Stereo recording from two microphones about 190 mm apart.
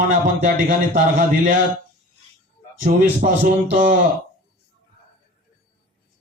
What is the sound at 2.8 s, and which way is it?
Speech, 45° right (ahead or behind).